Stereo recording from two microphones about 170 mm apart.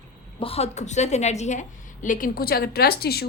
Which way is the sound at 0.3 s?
35° left (ahead or behind).